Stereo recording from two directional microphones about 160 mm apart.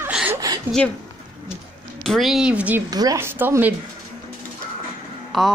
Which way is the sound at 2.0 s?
Centre (ahead or behind).